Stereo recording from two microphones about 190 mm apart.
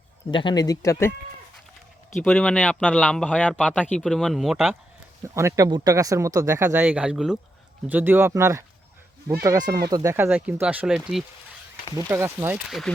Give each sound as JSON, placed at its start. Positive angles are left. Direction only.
{"t": 0.3, "sound": "speech", "side_deg": 25}
{"t": 2.2, "sound": "a man's voice", "side_deg": 10}
{"t": 11.9, "sound": "speech", "side_deg": -15}